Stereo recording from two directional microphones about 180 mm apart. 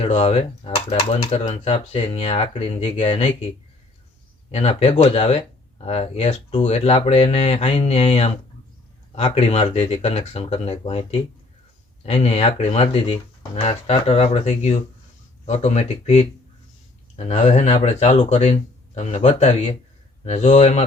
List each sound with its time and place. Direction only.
0.0 s speech: 35° left (ahead or behind)
4.5 s speech: 35° left (ahead or behind)